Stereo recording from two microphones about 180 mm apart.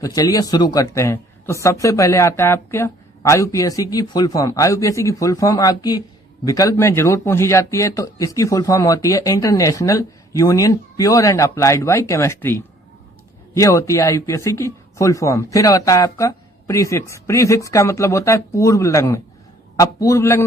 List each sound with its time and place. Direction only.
0.0 s a man's voice: 20° left (ahead or behind)